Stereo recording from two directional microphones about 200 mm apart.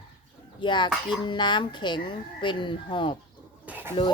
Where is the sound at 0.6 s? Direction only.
25° left (ahead or behind).